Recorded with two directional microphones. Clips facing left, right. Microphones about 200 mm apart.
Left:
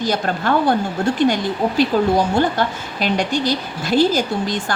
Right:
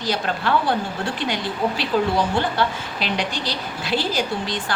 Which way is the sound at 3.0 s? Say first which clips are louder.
Left 7 dB; 45° left (ahead or behind).